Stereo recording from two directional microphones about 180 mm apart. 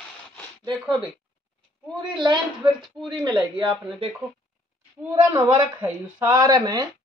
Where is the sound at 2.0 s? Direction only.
25° right (ahead or behind).